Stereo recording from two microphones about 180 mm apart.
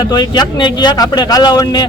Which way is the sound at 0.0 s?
20° left (ahead or behind).